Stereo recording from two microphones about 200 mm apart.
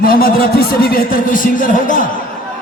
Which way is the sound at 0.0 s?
50° left (ahead or behind).